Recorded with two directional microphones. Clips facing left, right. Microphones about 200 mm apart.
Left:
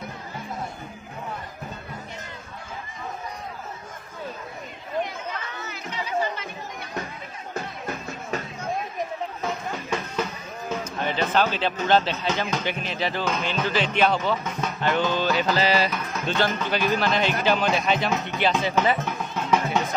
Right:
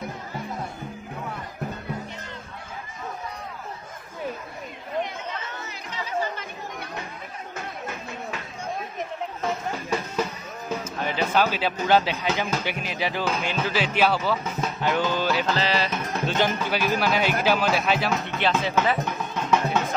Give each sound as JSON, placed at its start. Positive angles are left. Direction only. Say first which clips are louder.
{"t": 9.4, "sound": "music", "louder": "right 4 dB", "side_deg": 0}
{"t": 10.8, "sound": "speech", "louder": "left 1 dB", "side_deg": -5}
{"t": 15.4, "sound": "music", "louder": "left 3 dB", "side_deg": 10}
{"t": 15.9, "sound": "music", "louder": "right 3 dB", "side_deg": -30}
{"t": 16.3, "sound": "speech", "louder": "left 1 dB", "side_deg": -10}
{"t": 19.0, "sound": "music", "louder": "even", "side_deg": 10}